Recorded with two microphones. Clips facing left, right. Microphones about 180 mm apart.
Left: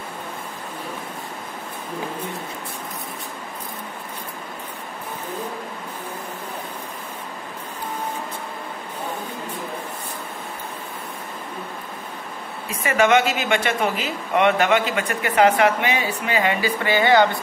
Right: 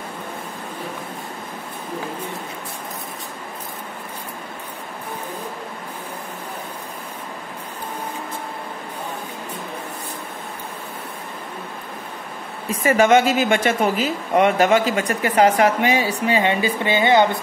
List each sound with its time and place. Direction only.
12.8 s a woman's voice: 45° right (ahead or behind); by 17.4 s 20° right (ahead or behind)